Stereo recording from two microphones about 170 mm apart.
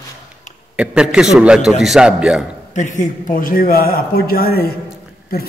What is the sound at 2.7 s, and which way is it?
A woman's voice, 45° left (ahead or behind).